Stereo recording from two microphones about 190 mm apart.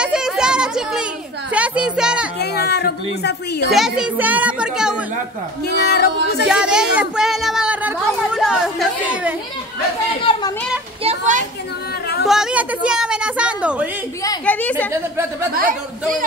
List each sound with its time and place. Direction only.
0.0 s a sound: 5° right (ahead or behind)
1.5 s music: 5° right (ahead or behind)
2.4 s a sound: 55° left (ahead or behind)
3.7 s a child's voice: 5° right (ahead or behind)
5.7 s speech: 60° left (ahead or behind)
6.4 s a sound: 5° right (ahead or behind)
10.3 s speech: 30° left (ahead or behind)
11.1 s children playing: 40° right (ahead or behind)
12.3 s a woman's voice: 5° right (ahead or behind)
14.4 s a woman's voice: 10° left (ahead or behind)
14.9 s speech: 15° right (ahead or behind)
15.5 s speech: 45° right (ahead or behind)